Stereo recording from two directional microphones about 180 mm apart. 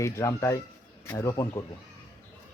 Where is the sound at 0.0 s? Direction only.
15° left (ahead or behind).